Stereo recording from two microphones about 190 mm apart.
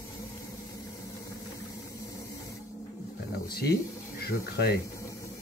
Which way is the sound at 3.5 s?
55° left (ahead or behind).